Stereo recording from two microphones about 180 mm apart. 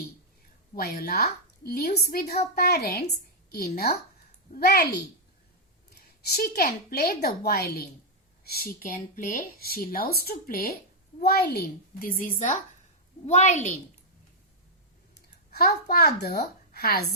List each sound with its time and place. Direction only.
0.8 s speech: 55° left (ahead or behind)
5.9 s a woman's voice: 60° left (ahead or behind); by 13.7 s 40° left (ahead or behind)
15.5 s speech: 60° left (ahead or behind)